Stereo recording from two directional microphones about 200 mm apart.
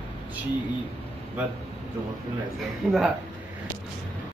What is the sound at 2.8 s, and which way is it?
Speech, 5° right (ahead or behind).